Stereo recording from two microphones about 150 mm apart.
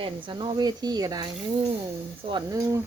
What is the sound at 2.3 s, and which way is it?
Speech, 25° right (ahead or behind).